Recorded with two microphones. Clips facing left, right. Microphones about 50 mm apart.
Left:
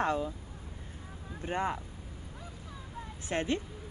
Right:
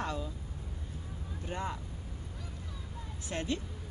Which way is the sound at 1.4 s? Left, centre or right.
Left.